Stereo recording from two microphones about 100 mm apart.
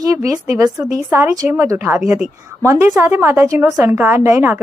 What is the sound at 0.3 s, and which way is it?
A woman's voice, 35° right (ahead or behind).